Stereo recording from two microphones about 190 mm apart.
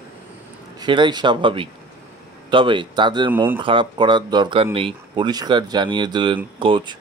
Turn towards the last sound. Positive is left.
turn(degrees=-25)  # may be behind; listen again after turning